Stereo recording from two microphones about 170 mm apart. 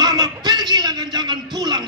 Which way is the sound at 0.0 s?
25° right (ahead or behind).